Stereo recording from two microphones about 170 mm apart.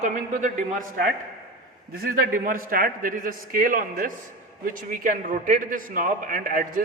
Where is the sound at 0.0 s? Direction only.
45° right (ahead or behind).